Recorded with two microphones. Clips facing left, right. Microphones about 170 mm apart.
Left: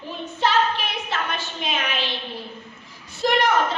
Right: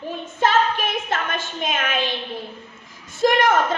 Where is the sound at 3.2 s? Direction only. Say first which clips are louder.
Right 3 dB; 50° right (ahead or behind).